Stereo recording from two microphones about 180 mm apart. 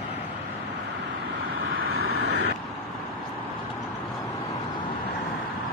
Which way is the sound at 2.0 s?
65° right (ahead or behind).